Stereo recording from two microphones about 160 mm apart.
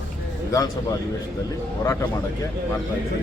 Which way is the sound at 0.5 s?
20° left (ahead or behind).